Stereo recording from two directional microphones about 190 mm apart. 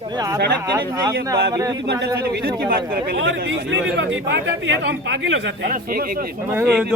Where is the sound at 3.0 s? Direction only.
70° right (ahead or behind).